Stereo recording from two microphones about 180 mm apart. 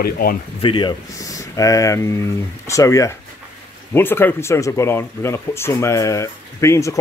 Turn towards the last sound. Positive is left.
turn(degrees=15)  # may be behind; listen again after turning